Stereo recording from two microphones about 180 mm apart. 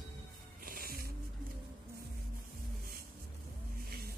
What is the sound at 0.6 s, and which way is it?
Music, 55° right (ahead or behind).